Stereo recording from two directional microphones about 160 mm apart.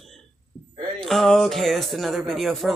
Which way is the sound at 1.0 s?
Centre (ahead or behind).